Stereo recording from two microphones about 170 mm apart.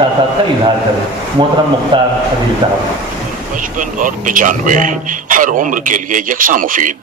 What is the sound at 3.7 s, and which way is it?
Speech, 50° right (ahead or behind).